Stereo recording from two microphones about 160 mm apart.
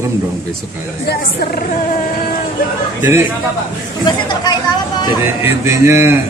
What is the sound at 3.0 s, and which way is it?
Speech, 15° right (ahead or behind).